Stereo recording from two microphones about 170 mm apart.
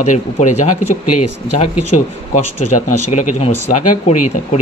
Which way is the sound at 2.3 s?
45° left (ahead or behind).